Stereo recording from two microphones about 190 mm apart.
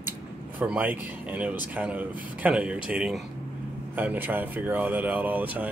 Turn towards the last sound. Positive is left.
turn(degrees=-10)  # may be behind; listen again after turning